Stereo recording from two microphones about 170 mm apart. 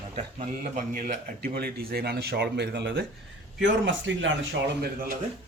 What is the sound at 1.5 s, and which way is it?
A man's voice, 65° right (ahead or behind).